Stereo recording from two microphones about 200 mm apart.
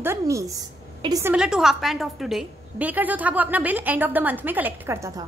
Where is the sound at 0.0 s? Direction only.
15° right (ahead or behind).